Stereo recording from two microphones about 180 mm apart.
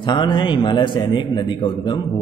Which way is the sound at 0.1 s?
25° left (ahead or behind).